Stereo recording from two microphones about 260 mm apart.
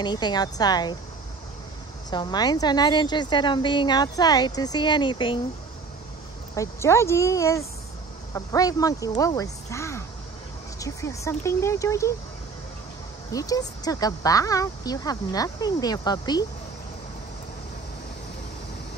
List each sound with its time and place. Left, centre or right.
0.0 s a woman's voice: centre
2.0 s a woman's voice: centre
6.5 s a woman's voice: centre
13.3 s a woman's voice: centre